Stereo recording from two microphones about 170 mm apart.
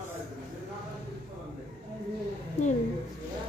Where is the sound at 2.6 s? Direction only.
40° left (ahead or behind).